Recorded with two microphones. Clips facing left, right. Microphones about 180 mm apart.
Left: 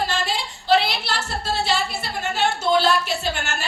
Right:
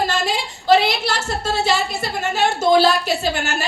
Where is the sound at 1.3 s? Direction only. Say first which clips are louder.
Right 4 dB; 45° right (ahead or behind).